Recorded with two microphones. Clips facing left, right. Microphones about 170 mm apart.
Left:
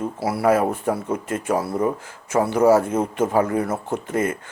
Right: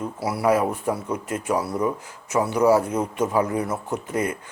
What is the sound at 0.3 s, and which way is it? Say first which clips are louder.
Speech: left 2 dB; 50° left (ahead or behind).